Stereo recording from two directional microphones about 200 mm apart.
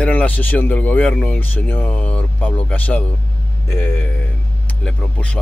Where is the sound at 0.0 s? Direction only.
10° left (ahead or behind).